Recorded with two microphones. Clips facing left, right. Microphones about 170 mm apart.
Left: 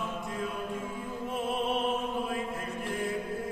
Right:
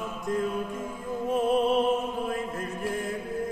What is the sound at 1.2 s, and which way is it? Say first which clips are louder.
Music: right 9 dB; 40° right (ahead or behind).